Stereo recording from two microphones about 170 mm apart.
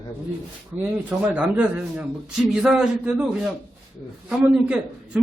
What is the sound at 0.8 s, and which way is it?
A man's voice, 10° right (ahead or behind).